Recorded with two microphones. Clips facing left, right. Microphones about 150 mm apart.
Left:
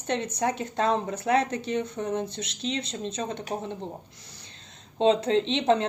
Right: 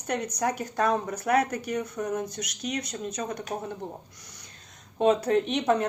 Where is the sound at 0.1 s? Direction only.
25° left (ahead or behind).